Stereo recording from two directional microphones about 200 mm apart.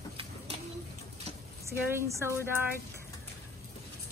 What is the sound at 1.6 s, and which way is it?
Speech, 15° right (ahead or behind).